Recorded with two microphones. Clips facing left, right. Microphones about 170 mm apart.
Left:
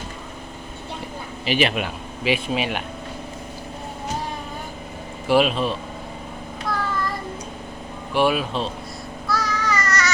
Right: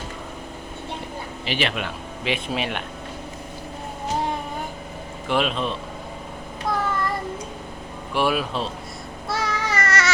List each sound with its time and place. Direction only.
1.5 s speech: 15° left (ahead or behind)
5.3 s speech: 5° left (ahead or behind)
6.7 s child singing: 20° right (ahead or behind)
8.1 s speech: centre (ahead or behind)
9.2 s babbling: 25° right (ahead or behind)